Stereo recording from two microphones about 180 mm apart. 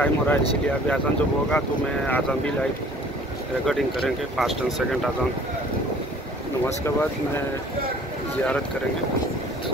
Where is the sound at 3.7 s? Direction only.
Centre (ahead or behind).